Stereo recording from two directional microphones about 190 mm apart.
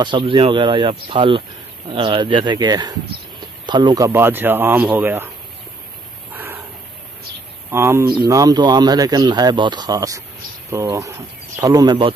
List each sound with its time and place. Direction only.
0.0 s speech: 25° right (ahead or behind)
6.3 s dog: 10° right (ahead or behind)
7.7 s speech: 15° right (ahead or behind)